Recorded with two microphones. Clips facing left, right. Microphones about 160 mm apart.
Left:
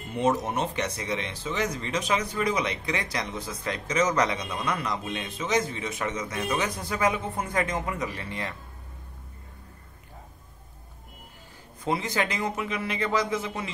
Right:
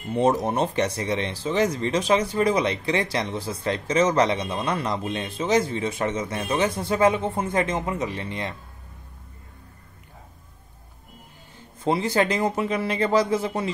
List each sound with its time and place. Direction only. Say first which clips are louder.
0.1 s speech: right 4 dB; 35° right (ahead or behind)
11.8 s speech: right 6 dB; 30° right (ahead or behind)